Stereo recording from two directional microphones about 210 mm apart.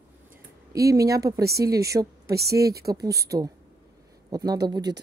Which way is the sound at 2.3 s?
50° right (ahead or behind).